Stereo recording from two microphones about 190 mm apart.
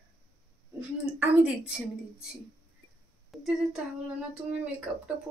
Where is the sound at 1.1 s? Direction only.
5° right (ahead or behind).